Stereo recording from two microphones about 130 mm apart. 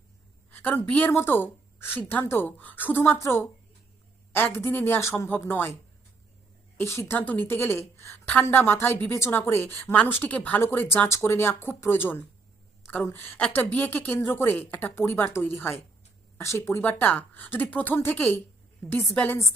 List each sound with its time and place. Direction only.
0.5 s a woman's voice: 15° left (ahead or behind)
6.7 s a woman's voice: 20° left (ahead or behind)